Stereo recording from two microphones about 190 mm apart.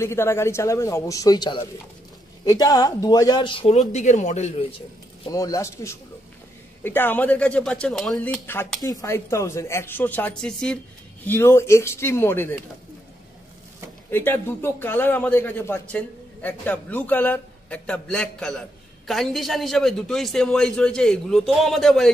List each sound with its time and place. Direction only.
0.0 s a man's voice: 15° left (ahead or behind); by 5.3 s 30° left (ahead or behind)
5.3 s a man's voice: 15° left (ahead or behind)
14.1 s a man's voice: 10° left (ahead or behind)